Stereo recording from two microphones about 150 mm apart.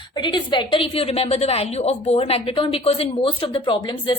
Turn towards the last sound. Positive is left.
turn(degrees=30)  # may be behind; listen again after turning